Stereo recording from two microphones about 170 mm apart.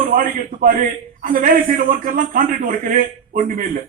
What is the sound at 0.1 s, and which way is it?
A man's voice, 55° right (ahead or behind).